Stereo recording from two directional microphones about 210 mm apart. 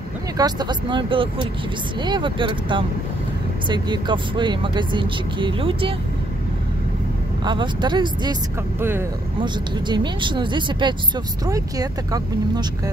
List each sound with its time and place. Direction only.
0.4 s speech: 20° right (ahead or behind)
7.4 s speech: 20° right (ahead or behind)
9.4 s speech: 20° right (ahead or behind)